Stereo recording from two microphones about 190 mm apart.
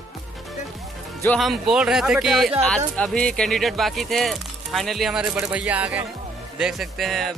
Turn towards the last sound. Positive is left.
turn(degrees=0)  # may be behind; listen again after turning